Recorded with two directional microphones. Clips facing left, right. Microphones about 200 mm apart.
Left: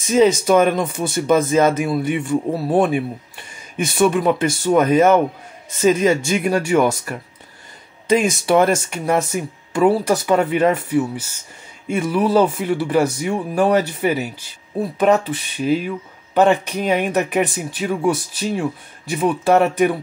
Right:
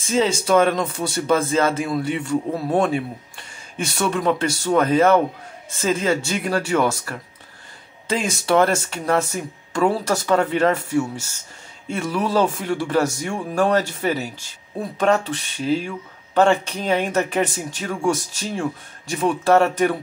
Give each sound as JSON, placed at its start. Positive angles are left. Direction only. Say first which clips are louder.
{"t": 0.0, "sound": "speech", "louder": "left 6 dB", "side_deg": 15}
{"t": 3.7, "sound": "speech", "louder": "left 6 dB", "side_deg": 10}
{"t": 11.9, "sound": "speech", "louder": "left 5 dB", "side_deg": 10}